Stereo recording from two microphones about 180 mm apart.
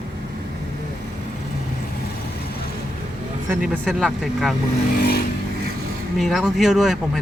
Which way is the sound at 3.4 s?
5° right (ahead or behind).